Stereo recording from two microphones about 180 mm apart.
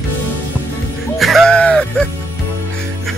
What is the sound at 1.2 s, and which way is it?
Music, centre (ahead or behind).